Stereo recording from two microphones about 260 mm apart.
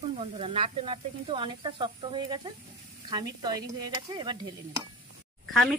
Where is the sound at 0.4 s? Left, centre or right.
Right.